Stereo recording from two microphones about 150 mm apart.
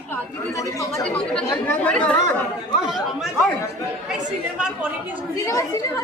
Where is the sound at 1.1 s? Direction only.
5° left (ahead or behind).